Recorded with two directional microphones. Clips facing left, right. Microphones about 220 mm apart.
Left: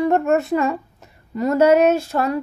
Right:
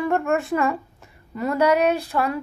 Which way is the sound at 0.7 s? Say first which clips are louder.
Left 2 dB; 40° left (ahead or behind).